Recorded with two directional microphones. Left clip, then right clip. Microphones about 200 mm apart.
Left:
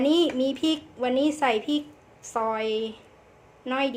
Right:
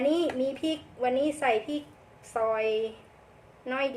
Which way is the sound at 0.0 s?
35° left (ahead or behind).